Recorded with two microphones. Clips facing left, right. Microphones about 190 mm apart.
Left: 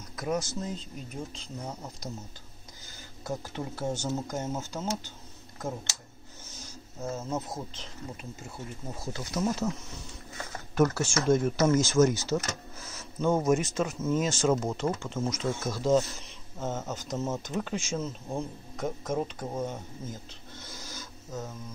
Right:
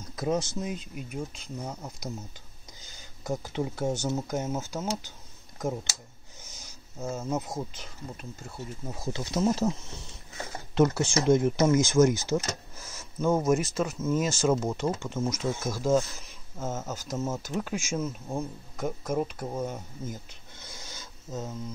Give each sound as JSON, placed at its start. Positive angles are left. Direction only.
{"t": 0.1, "sound": "speech", "side_deg": -25}
{"t": 0.6, "sound": "speech", "side_deg": -10}
{"t": 2.8, "sound": "speech", "side_deg": -20}
{"t": 6.4, "sound": "speech", "side_deg": -15}
{"t": 9.0, "sound": "speech", "side_deg": -25}
{"t": 12.3, "sound": "a sound", "side_deg": -10}
{"t": 13.7, "sound": "speech", "side_deg": -5}
{"t": 20.5, "sound": "a sound", "side_deg": -20}